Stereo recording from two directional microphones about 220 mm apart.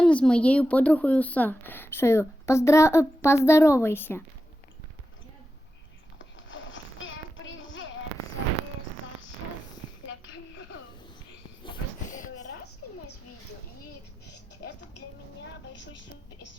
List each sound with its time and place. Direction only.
0.0 s a woman's voice: 5° left (ahead or behind)
6.1 s a sound: 60° left (ahead or behind)
7.6 s child singing: 60° left (ahead or behind)